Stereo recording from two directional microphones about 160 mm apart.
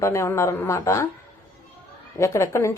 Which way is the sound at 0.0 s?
15° left (ahead or behind).